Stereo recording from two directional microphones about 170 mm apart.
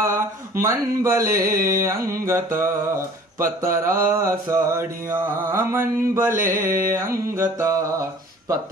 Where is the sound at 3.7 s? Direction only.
55° right (ahead or behind).